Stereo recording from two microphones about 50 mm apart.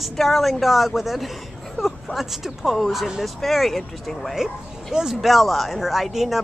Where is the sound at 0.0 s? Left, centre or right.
Centre.